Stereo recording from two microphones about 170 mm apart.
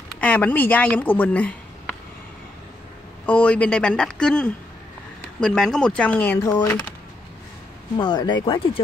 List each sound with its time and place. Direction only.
0.2 s speech: 10° left (ahead or behind)
3.3 s speech: 10° left (ahead or behind)
8.0 s speech: 25° left (ahead or behind)